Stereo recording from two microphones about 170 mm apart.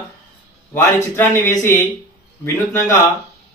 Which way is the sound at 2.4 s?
15° left (ahead or behind).